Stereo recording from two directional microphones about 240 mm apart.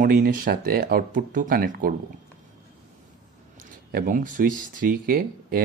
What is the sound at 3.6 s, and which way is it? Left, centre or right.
Speech, right.